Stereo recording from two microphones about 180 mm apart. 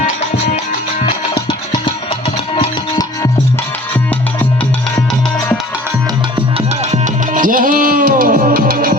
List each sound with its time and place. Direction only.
6.9 s music: 45° right (ahead or behind)